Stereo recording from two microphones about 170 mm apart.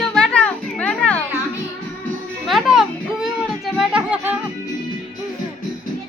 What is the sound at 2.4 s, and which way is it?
Music, centre (ahead or behind).